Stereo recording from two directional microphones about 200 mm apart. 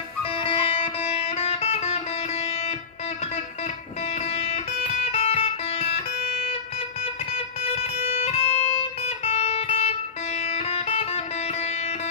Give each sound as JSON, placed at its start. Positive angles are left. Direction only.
{"t": 0.4, "sound": "music", "side_deg": 25}
{"t": 4.5, "sound": "music", "side_deg": 30}
{"t": 7.7, "sound": "music", "side_deg": 30}